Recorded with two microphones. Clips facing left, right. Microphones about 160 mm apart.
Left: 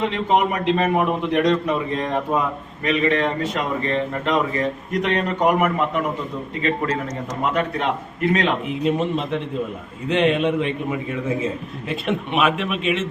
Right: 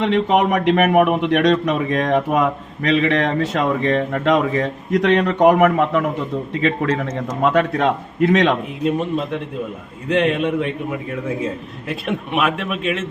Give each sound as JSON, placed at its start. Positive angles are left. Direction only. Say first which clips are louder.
{"t": 0.0, "sound": "a man's voice", "louder": "right 3 dB", "side_deg": -90}
{"t": 7.5, "sound": "a man's voice", "louder": "right 4 dB", "side_deg": -90}
{"t": 8.8, "sound": "a man's voice", "louder": "left 1 dB", "side_deg": 0}
{"t": 11.9, "sound": "a man's voice", "louder": "even", "side_deg": 0}